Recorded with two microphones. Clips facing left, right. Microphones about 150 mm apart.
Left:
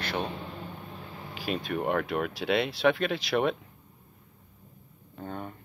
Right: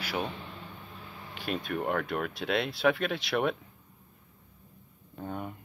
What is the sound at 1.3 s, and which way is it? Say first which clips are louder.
Speech: left 2 dB; centre (ahead or behind).